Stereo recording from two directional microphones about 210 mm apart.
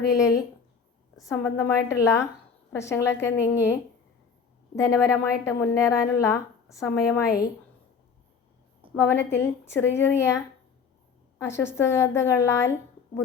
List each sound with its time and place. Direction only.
0.1 s a woman's voice: 15° left (ahead or behind)
4.7 s a woman's voice: 15° left (ahead or behind)
8.8 s a sound: 25° right (ahead or behind)
9.3 s a woman's voice: 10° left (ahead or behind)